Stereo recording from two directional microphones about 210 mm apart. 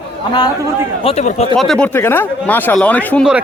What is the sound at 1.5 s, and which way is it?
Speech, centre (ahead or behind).